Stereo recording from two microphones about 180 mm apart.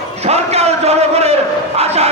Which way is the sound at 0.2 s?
35° right (ahead or behind).